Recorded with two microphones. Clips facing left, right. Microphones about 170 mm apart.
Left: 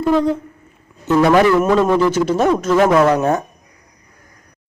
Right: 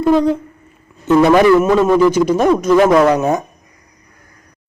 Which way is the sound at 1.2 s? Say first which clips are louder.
Right 2 dB; 10° right (ahead or behind).